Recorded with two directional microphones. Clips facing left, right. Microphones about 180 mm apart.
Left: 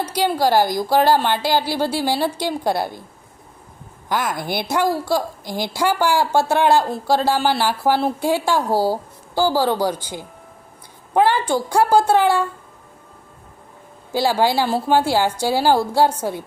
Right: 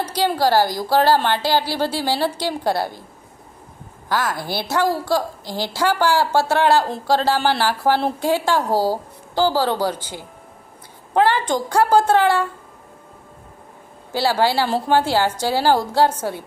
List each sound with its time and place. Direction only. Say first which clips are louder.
0.0 s a woman's voice: even; 10° left (ahead or behind)
4.1 s a woman's voice: even; 15° left (ahead or behind)
14.1 s a woman's voice: left 1 dB; 15° left (ahead or behind)